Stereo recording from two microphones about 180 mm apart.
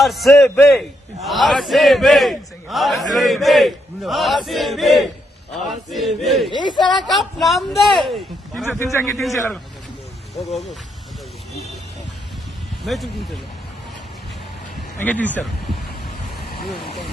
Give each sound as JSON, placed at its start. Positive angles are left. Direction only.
{"t": 0.0, "sound": "a man's voice", "side_deg": 0}
{"t": 0.4, "sound": "a man's voice", "side_deg": 10}
{"t": 1.2, "sound": "a man's voice", "side_deg": 0}
{"t": 6.5, "sound": "speech", "side_deg": 25}
{"t": 7.1, "sound": "a man's voice", "side_deg": 0}
{"t": 8.8, "sound": "a man's voice", "side_deg": 15}
{"t": 9.1, "sound": "a man's voice", "side_deg": 0}
{"t": 12.8, "sound": "a man's voice", "side_deg": 0}
{"t": 14.9, "sound": "speech", "side_deg": 10}